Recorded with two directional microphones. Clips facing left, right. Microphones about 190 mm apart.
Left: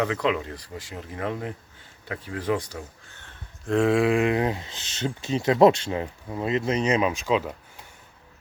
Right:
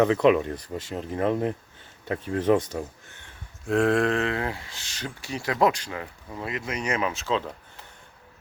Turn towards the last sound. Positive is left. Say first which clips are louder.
# left 3 dB
turn(degrees=15)  # may be behind; listen again after turning